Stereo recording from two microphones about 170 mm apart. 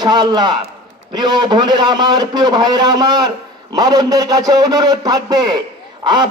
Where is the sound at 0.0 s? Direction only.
25° right (ahead or behind).